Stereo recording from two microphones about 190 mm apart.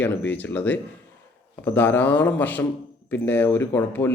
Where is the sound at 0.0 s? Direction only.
10° left (ahead or behind).